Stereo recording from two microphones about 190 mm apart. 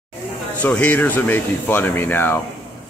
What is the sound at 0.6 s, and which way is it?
Speech, 5° left (ahead or behind).